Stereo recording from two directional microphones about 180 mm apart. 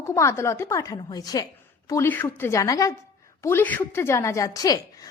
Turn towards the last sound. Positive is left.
turn(degrees=20)  # may be behind; listen again after turning